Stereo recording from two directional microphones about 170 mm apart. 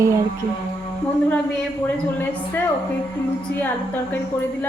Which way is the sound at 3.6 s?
10° left (ahead or behind).